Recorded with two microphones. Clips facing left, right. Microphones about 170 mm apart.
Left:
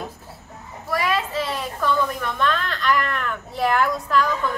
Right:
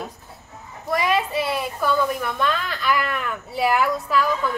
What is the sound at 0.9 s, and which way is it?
A woman's voice, 20° right (ahead or behind).